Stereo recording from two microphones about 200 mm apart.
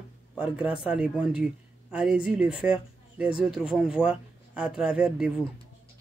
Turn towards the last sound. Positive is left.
turn(degrees=-5)  # may be behind; listen again after turning